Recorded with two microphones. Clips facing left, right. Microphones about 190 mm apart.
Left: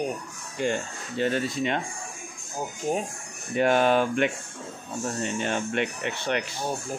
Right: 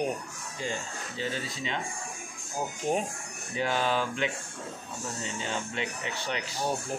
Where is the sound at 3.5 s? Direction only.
60° left (ahead or behind).